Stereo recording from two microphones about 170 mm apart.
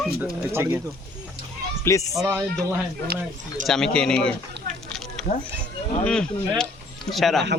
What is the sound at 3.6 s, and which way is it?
Speech, 5° left (ahead or behind).